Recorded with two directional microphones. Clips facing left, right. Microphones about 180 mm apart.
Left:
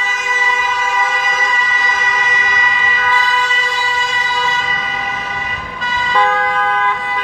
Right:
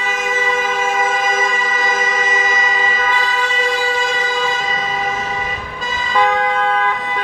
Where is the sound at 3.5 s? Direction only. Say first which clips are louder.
Right 3 dB; 55° right (ahead or behind).